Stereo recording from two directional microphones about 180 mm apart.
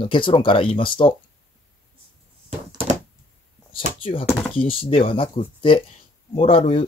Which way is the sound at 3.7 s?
30° left (ahead or behind).